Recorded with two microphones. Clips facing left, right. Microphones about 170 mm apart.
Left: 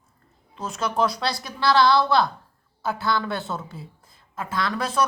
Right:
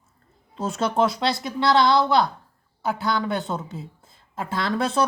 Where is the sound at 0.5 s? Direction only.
30° right (ahead or behind).